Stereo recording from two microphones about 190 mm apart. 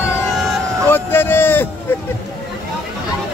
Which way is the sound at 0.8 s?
10° left (ahead or behind).